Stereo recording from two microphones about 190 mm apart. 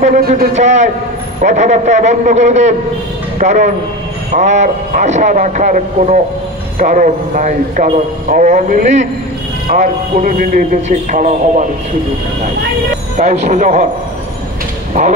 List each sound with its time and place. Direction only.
0.0 s speech: 45° right (ahead or behind)
0.6 s a man's voice: 40° right (ahead or behind)
13.2 s a man's voice: 40° right (ahead or behind)